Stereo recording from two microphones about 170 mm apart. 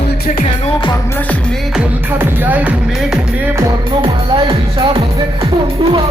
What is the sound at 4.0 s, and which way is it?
Speech, 30° right (ahead or behind).